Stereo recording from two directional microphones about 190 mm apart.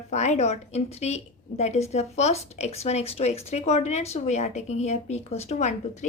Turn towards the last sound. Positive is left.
turn(degrees=40)  # may be behind; listen again after turning